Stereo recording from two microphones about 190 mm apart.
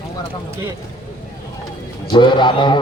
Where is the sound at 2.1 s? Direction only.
25° left (ahead or behind).